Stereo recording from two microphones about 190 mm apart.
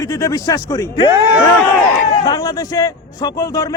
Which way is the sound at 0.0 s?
20° left (ahead or behind).